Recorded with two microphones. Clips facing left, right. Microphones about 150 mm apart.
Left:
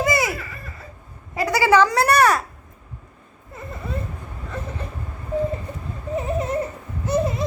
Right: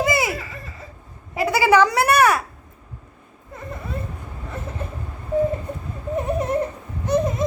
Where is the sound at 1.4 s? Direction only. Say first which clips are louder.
Even; 15° right (ahead or behind).